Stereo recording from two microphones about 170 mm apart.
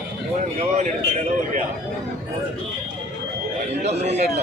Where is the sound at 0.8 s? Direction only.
45° right (ahead or behind).